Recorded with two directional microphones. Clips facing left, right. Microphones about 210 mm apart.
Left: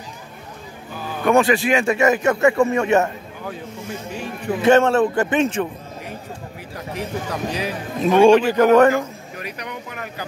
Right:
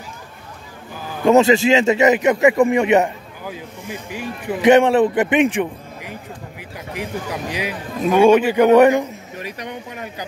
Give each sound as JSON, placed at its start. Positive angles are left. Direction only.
{"t": 1.2, "sound": "a man's voice", "side_deg": -25}
{"t": 4.1, "sound": "a man's voice", "side_deg": -15}